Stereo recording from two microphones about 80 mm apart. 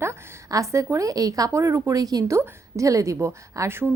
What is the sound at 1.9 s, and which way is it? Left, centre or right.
Speech, right.